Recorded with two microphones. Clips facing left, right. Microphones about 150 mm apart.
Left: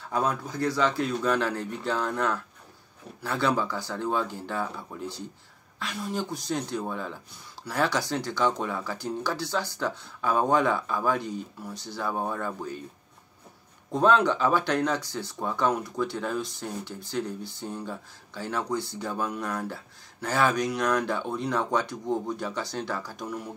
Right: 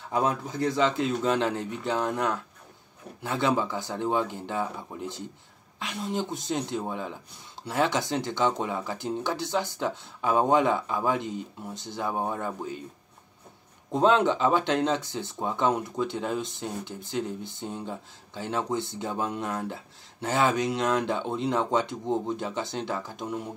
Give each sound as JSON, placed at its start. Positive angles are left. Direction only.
{"t": 0.1, "sound": "speech", "side_deg": -20}
{"t": 13.9, "sound": "speech", "side_deg": -20}